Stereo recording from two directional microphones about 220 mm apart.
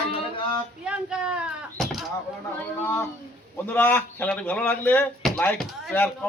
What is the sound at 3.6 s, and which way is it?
Speech, 10° left (ahead or behind).